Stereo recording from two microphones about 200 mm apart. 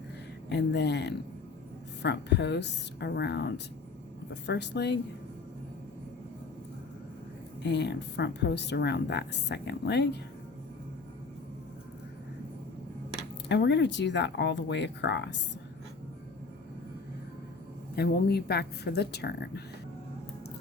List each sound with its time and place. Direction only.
0.5 s speech: 60° left (ahead or behind)
7.6 s speech: 60° left (ahead or behind)
13.5 s speech: 60° left (ahead or behind)
17.9 s a woman's voice: 55° left (ahead or behind)